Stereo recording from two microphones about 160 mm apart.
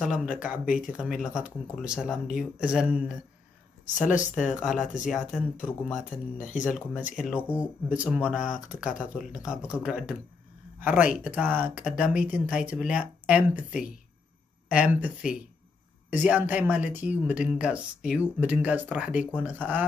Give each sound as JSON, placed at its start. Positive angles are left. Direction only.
{"t": 0.0, "sound": "speech", "side_deg": 0}
{"t": 3.8, "sound": "speech", "side_deg": 50}
{"t": 4.6, "sound": "speech", "side_deg": -5}
{"t": 6.3, "sound": "speech", "side_deg": 50}
{"t": 6.6, "sound": "speech", "side_deg": -5}
{"t": 11.1, "sound": "speech", "side_deg": -10}
{"t": 14.7, "sound": "speech", "side_deg": -10}